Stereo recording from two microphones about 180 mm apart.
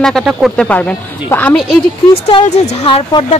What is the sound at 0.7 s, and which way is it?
Speech, 10° left (ahead or behind).